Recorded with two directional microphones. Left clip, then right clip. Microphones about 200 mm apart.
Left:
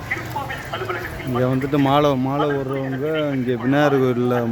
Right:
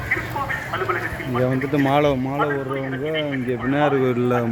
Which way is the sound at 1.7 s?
10° left (ahead or behind).